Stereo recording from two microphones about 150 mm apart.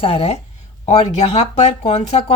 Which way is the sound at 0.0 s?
40° left (ahead or behind).